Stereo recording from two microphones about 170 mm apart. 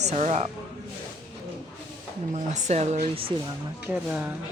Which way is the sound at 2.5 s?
45° right (ahead or behind).